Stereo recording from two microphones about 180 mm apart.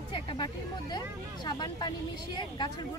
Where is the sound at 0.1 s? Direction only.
25° left (ahead or behind).